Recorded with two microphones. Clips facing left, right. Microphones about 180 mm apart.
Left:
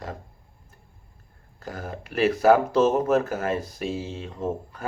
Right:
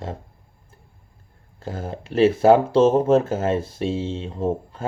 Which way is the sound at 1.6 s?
25° right (ahead or behind).